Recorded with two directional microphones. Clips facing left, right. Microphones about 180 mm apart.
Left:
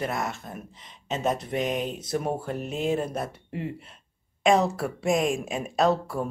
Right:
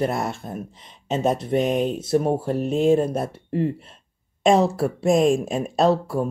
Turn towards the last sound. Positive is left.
turn(degrees=-30)  # may be behind; listen again after turning